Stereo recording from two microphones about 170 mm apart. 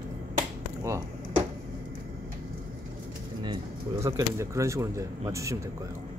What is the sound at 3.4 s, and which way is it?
Speech, 25° right (ahead or behind).